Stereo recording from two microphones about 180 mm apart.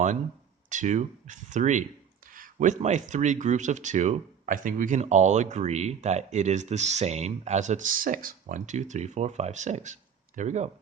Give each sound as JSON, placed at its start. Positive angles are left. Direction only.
{"t": 0.7, "sound": "speech", "side_deg": -40}